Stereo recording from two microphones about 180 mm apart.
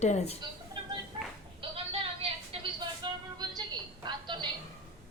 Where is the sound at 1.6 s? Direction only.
30° right (ahead or behind).